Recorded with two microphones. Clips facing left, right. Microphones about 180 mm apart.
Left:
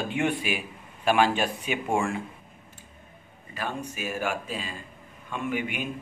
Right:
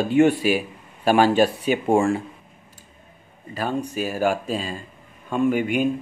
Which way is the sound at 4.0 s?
35° right (ahead or behind).